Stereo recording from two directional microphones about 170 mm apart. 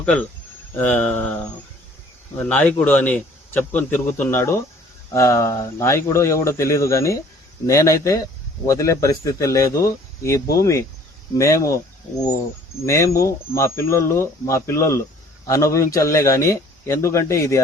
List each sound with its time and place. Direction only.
0.0 s speech: 5° left (ahead or behind)
2.5 s speech: 10° left (ahead or behind)
12.8 s speech: 15° left (ahead or behind)